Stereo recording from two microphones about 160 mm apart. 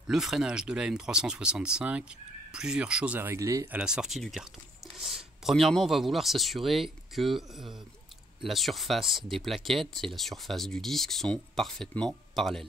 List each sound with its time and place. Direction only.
0.1 s speech: centre (ahead or behind); by 3.8 s 20° right (ahead or behind)
3.8 s speech: 5° right (ahead or behind)